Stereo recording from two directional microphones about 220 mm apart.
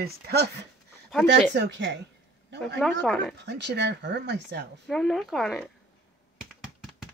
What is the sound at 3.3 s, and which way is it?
Speech, 50° right (ahead or behind).